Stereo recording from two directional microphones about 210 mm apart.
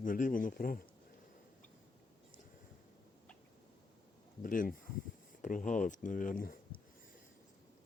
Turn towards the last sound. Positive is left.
turn(degrees=40)  # may be behind; listen again after turning